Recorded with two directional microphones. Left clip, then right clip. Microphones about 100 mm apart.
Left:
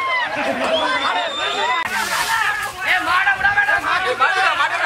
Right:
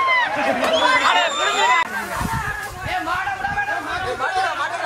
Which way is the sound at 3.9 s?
40° left (ahead or behind).